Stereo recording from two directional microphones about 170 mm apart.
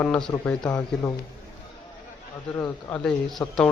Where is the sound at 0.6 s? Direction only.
25° left (ahead or behind).